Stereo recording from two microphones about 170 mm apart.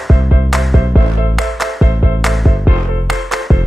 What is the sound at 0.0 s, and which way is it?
Music, centre (ahead or behind).